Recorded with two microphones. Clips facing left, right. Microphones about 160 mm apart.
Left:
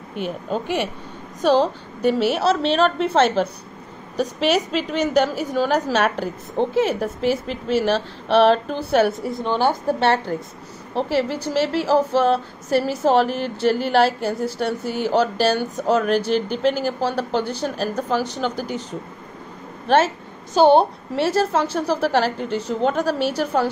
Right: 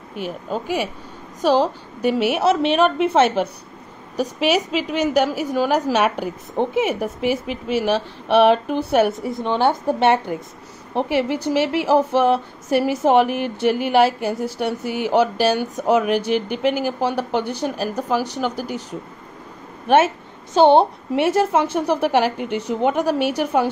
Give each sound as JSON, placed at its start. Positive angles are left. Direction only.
{"t": 0.1, "sound": "a woman's voice", "side_deg": -5}
{"t": 20.5, "sound": "a woman's voice", "side_deg": -20}